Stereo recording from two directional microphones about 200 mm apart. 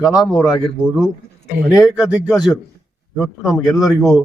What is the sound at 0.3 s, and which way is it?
Speech, 20° left (ahead or behind).